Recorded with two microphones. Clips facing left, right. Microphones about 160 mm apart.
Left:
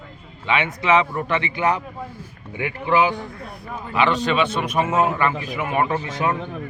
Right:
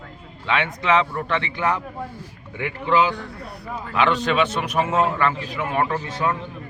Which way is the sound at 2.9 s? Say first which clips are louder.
Left 1 dB; 15° left (ahead or behind).